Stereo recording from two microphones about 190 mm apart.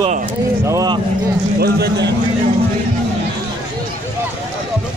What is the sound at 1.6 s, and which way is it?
Speech, 60° right (ahead or behind).